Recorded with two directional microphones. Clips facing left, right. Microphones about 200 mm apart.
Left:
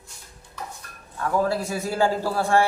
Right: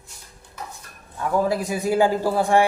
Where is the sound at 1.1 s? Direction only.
15° right (ahead or behind).